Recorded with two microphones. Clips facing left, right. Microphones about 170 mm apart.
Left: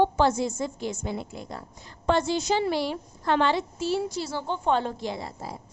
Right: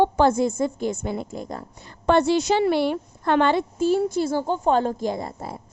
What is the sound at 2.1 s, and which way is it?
A woman's voice, 65° right (ahead or behind).